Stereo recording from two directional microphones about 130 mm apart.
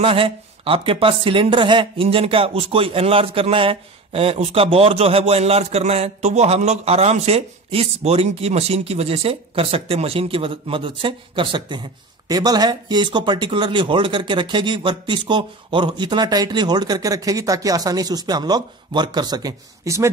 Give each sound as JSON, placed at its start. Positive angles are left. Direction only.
{"t": 0.0, "sound": "speech", "side_deg": -45}